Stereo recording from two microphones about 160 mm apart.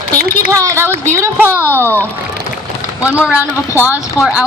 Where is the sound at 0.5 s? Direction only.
15° right (ahead or behind).